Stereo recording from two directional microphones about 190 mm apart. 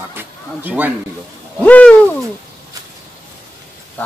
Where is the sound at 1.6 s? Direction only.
5° left (ahead or behind).